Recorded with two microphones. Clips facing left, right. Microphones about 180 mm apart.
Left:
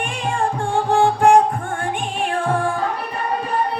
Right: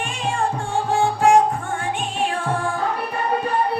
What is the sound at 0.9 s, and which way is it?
Music, 50° left (ahead or behind).